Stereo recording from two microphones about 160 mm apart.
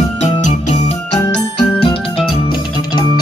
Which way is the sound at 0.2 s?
45° left (ahead or behind).